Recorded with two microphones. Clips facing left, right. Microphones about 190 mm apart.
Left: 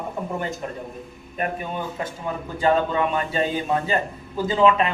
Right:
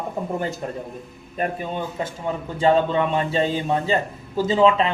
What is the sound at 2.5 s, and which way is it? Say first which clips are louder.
A man's voice: right 2 dB; 25° right (ahead or behind).